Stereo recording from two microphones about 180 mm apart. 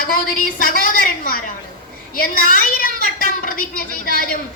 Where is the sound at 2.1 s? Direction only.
50° left (ahead or behind).